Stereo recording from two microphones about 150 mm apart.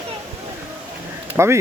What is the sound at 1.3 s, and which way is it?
Speech, 15° right (ahead or behind).